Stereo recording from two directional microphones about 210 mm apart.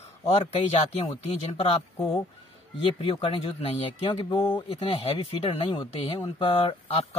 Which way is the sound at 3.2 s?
25° left (ahead or behind).